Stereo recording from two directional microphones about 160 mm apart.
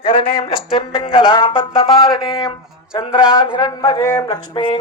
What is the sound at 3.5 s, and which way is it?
Speech, 25° left (ahead or behind).